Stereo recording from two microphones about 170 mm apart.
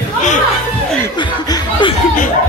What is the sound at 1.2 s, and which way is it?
Laughter, 25° left (ahead or behind).